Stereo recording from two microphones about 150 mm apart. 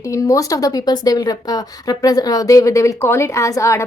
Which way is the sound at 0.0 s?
20° left (ahead or behind).